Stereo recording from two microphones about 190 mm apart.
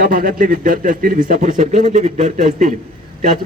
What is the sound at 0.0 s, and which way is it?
A man's voice, 45° right (ahead or behind).